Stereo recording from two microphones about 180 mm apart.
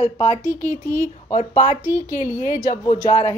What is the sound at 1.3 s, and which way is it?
Speech, 40° left (ahead or behind).